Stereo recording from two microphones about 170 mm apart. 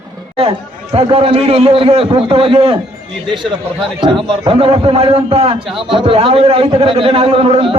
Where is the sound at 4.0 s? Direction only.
30° right (ahead or behind).